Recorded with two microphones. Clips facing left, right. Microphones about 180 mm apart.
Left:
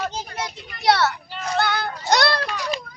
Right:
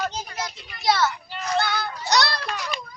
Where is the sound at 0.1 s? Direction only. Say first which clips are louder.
Left 2 dB; 50° left (ahead or behind); by 1.1 s 70° left (ahead or behind).